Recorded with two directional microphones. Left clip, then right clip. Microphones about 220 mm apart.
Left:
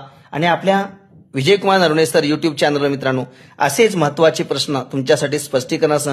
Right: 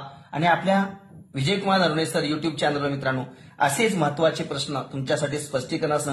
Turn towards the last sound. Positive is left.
turn(degrees=55)  # may be behind; listen again after turning